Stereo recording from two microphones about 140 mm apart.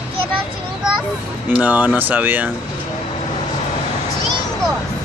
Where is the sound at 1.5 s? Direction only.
10° right (ahead or behind).